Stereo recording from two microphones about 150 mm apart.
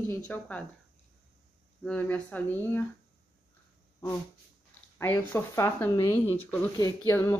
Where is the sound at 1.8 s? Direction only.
10° left (ahead or behind).